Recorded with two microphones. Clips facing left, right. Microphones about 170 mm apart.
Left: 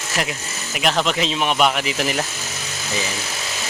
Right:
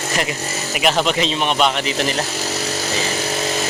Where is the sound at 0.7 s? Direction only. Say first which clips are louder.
Right 2 dB; centre (ahead or behind).